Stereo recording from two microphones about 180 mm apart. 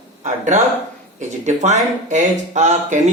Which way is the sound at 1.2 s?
40° right (ahead or behind).